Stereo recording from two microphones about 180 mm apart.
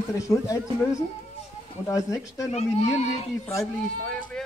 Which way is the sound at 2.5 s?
40° left (ahead or behind).